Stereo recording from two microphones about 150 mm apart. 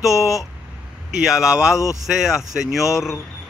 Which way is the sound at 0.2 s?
Centre (ahead or behind).